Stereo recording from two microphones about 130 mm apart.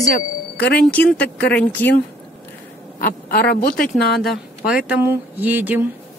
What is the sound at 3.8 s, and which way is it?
Speech, centre (ahead or behind).